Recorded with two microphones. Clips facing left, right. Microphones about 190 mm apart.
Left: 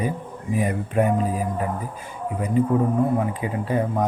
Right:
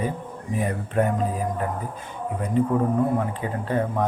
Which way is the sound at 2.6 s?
5° left (ahead or behind).